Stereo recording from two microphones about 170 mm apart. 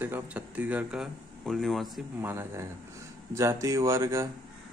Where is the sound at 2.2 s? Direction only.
15° right (ahead or behind).